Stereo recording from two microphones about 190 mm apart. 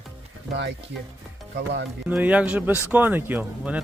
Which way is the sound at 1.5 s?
70° right (ahead or behind).